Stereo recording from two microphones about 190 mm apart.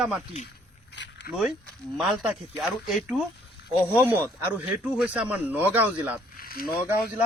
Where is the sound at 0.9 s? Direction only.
70° left (ahead or behind).